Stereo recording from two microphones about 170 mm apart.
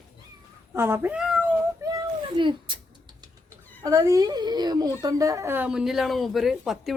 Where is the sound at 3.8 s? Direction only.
20° right (ahead or behind).